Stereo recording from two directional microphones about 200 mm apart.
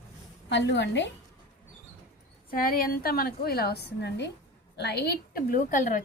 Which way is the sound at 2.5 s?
45° left (ahead or behind).